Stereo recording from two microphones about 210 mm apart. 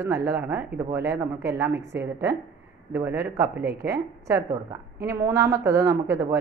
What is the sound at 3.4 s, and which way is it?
Speech, 50° right (ahead or behind).